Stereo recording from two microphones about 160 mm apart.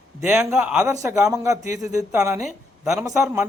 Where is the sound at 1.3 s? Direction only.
20° right (ahead or behind).